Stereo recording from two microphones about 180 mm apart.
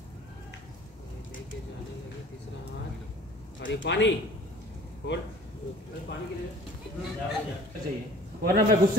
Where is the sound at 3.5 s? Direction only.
85° left.